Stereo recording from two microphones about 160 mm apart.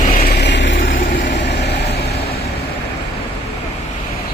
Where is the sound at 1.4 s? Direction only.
90° left.